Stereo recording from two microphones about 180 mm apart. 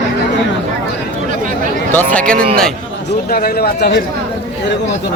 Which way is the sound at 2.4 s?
55° right (ahead or behind).